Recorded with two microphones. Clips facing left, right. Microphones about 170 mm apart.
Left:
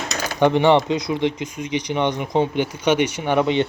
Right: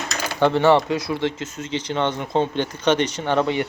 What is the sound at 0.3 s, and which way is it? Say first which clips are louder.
Speech: left 1 dB; 15° left (ahead or behind).